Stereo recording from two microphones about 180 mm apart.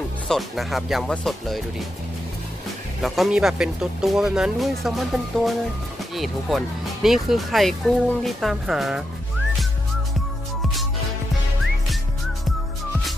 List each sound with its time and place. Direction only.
0.3 s speech: centre (ahead or behind)
3.0 s speech: centre (ahead or behind)